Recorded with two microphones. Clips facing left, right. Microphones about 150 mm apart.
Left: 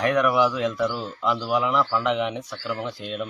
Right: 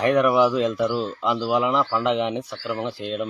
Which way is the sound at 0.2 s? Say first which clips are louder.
Right 3 dB; 30° right (ahead or behind).